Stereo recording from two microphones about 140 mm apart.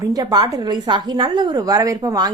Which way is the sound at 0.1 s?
30° right (ahead or behind).